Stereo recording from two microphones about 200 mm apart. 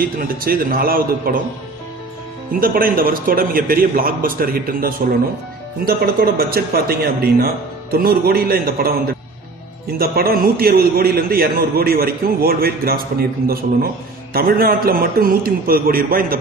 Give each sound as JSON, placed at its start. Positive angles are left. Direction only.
{"t": 0.0, "sound": "a man's voice", "side_deg": -45}
{"t": 2.6, "sound": "a man's voice", "side_deg": -45}